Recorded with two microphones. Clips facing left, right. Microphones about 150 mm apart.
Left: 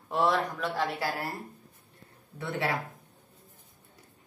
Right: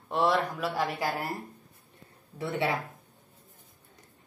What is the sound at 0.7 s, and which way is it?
Speech, 15° right (ahead or behind).